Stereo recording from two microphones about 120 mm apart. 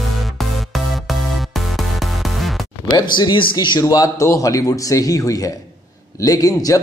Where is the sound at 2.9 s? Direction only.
40° left (ahead or behind).